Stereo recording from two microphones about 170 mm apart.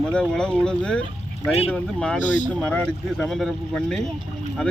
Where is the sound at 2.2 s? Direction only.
50° left (ahead or behind).